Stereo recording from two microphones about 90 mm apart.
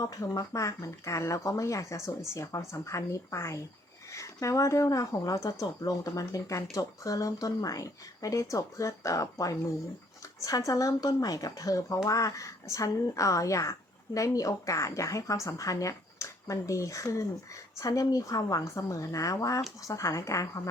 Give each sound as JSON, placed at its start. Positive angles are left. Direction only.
{"t": 0.0, "sound": "speech", "side_deg": 40}